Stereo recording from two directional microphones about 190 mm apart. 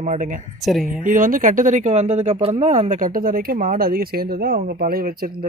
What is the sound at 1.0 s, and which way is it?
Speech, 45° right (ahead or behind).